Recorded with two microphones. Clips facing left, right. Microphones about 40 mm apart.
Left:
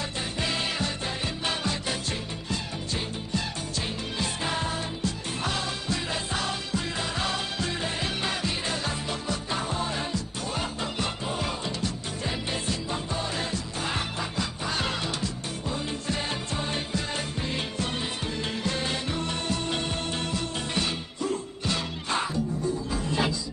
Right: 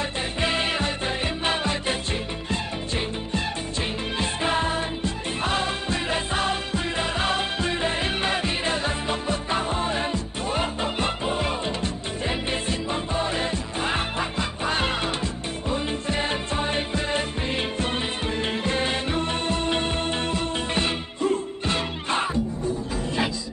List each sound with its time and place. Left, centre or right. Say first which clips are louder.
0.4 s music: right 5 dB; right
4.2 s music: right 6 dB; right